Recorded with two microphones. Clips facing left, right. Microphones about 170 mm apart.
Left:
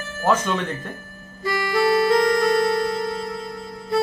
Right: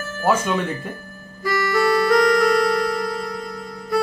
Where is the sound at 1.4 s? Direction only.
25° left (ahead or behind).